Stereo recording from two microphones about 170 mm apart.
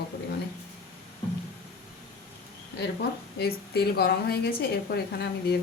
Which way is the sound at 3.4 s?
70° left (ahead or behind).